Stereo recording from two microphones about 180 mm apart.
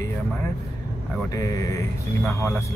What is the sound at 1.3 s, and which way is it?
Speech, 20° left (ahead or behind).